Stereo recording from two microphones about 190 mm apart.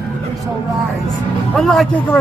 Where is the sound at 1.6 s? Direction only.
Centre (ahead or behind).